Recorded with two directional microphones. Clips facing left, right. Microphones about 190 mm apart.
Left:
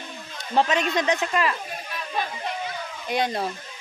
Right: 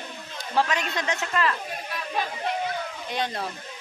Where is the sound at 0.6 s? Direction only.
20° left (ahead or behind).